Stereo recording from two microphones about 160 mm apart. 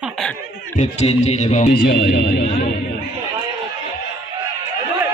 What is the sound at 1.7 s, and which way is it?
Speech, 90° left.